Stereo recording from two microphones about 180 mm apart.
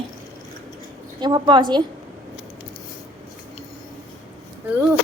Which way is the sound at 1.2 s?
25° right (ahead or behind).